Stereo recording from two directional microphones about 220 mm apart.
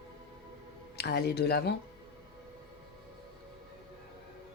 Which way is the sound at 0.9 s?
50° left (ahead or behind).